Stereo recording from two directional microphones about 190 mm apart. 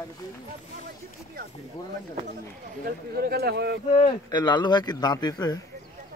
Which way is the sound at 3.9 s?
30° left (ahead or behind).